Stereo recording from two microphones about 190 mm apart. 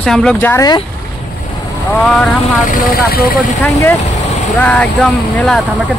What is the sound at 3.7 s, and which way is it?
Speech, 15° left (ahead or behind).